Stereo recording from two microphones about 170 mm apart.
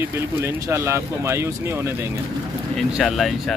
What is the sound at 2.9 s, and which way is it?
Speech, centre (ahead or behind).